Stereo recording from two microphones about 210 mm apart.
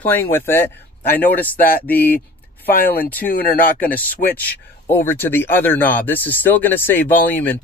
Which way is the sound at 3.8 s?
10° left (ahead or behind).